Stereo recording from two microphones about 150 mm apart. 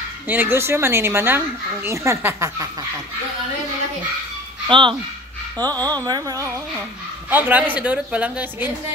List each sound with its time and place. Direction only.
0.3 s a woman's voice: 15° right (ahead or behind)
4.6 s speech: 35° right (ahead or behind)
6.0 s a sound: 25° right (ahead or behind)
7.2 s a woman's voice: 10° right (ahead or behind)